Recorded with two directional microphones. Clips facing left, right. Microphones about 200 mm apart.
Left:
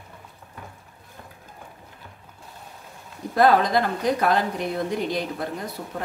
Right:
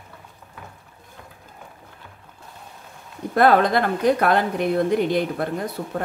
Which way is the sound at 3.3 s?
60° right (ahead or behind).